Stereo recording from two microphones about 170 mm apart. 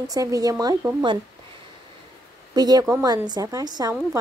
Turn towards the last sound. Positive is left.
turn(degrees=-25)  # may be behind; listen again after turning